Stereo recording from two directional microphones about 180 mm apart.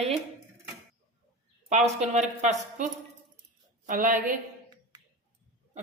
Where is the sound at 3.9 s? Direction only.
50° right (ahead or behind).